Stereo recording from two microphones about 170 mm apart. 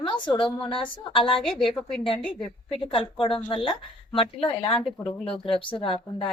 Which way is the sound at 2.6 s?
30° left (ahead or behind).